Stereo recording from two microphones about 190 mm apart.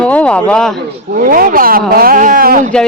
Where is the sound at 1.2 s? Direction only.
50° right (ahead or behind).